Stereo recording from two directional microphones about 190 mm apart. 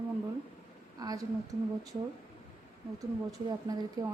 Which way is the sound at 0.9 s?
20° right (ahead or behind).